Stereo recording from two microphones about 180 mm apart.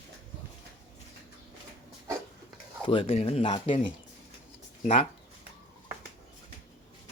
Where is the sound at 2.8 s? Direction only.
30° left (ahead or behind).